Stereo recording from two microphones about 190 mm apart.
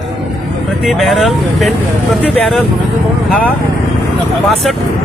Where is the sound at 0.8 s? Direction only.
Centre (ahead or behind).